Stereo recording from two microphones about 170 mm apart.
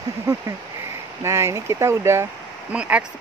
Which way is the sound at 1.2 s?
15° right (ahead or behind).